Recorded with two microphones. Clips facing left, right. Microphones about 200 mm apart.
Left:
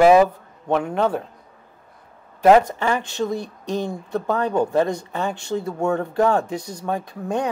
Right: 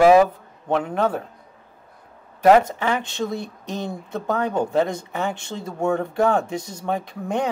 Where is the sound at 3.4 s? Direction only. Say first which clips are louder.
Left 4 dB; 15° left (ahead or behind).